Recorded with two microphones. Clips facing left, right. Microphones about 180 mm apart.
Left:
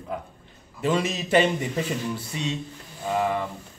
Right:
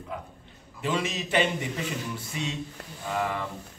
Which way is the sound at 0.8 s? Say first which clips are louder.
Left 4 dB; 40° left (ahead or behind).